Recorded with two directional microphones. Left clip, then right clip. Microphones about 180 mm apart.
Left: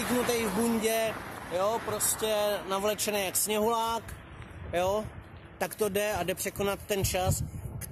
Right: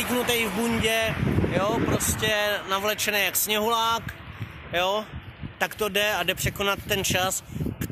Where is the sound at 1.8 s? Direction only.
20° right (ahead or behind).